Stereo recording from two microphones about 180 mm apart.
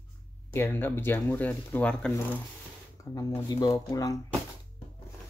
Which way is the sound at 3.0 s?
15° left (ahead or behind).